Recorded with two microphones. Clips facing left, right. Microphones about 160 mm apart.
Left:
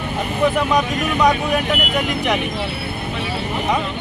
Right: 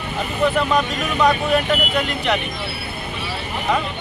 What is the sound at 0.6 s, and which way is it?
Speech, 15° left (ahead or behind).